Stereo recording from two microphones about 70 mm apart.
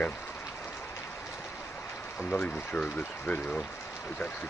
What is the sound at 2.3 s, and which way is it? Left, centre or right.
Speech, centre.